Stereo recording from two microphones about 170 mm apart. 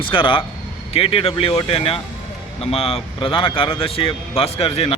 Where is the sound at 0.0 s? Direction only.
30° left (ahead or behind).